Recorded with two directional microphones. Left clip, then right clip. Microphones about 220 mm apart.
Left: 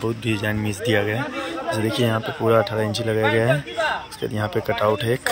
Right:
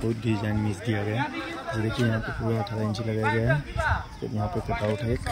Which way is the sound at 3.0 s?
35° left (ahead or behind).